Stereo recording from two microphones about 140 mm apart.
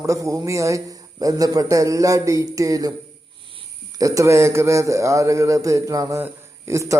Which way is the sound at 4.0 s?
25° right (ahead or behind).